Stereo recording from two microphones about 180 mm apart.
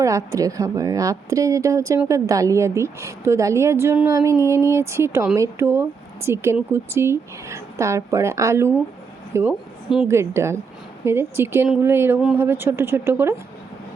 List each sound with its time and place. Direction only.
0.0 s a woman's voice: 15° right (ahead or behind)